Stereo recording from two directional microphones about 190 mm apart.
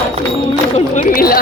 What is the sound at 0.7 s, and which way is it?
Speech, 45° left (ahead or behind).